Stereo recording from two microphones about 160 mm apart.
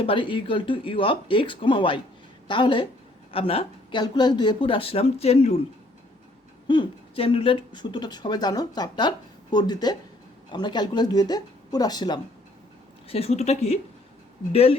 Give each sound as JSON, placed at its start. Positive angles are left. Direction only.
{"t": 0.0, "sound": "speech", "side_deg": 35}
{"t": 6.7, "sound": "speech", "side_deg": 30}
{"t": 13.1, "sound": "speech", "side_deg": 40}